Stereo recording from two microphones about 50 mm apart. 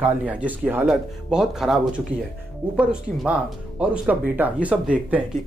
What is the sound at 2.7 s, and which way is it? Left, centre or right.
Speech, right.